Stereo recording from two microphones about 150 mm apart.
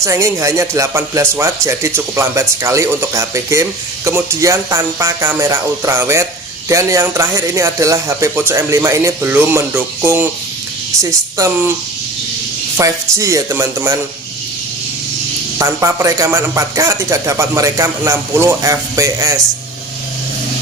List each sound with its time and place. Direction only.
0.0 s speech: 20° right (ahead or behind)
12.7 s speech: 20° right (ahead or behind)
15.5 s speech: 20° right (ahead or behind)